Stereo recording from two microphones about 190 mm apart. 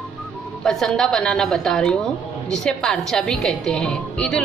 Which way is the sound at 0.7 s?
Centre (ahead or behind).